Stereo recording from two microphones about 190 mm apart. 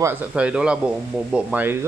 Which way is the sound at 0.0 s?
10° right (ahead or behind).